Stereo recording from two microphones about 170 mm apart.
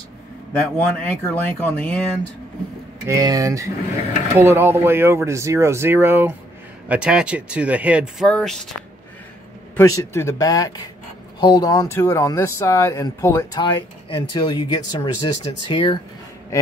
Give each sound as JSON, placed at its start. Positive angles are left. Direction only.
{"t": 0.6, "sound": "speech", "side_deg": 10}
{"t": 3.1, "sound": "speech", "side_deg": -20}
{"t": 8.3, "sound": "speech", "side_deg": 5}
{"t": 9.8, "sound": "speech", "side_deg": 15}
{"t": 13.6, "sound": "speech", "side_deg": 30}